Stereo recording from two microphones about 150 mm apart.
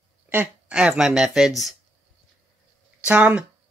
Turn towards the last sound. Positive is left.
turn(degrees=-10)  # may be behind; listen again after turning